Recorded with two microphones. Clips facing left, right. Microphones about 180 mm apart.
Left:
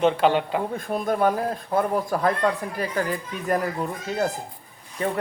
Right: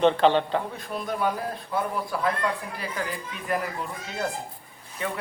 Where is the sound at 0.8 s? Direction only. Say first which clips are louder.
Left 6 dB; 45° left (ahead or behind).